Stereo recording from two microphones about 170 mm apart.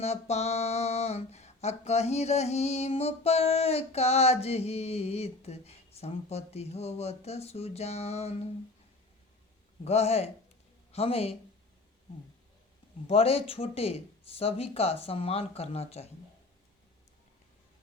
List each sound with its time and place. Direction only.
0.0 s speech: 40° left (ahead or behind)
9.8 s speech: 40° left (ahead or behind)
13.1 s speech: 35° left (ahead or behind)